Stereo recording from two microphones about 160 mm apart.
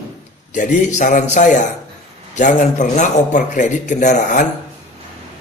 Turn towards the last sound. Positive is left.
turn(degrees=50)  # may be behind; listen again after turning